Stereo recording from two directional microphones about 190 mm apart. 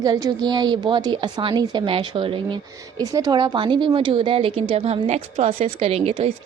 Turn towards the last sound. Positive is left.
turn(degrees=-35)  # may be behind; listen again after turning